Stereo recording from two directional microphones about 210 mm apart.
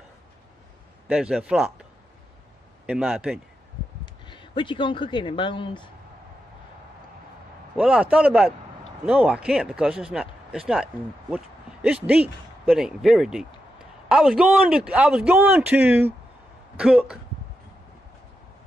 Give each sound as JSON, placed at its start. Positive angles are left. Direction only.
{"t": 1.0, "sound": "speech", "side_deg": -5}
{"t": 2.9, "sound": "a man's voice", "side_deg": -5}
{"t": 4.0, "sound": "speech", "side_deg": 20}
{"t": 7.7, "sound": "a man's voice", "side_deg": -5}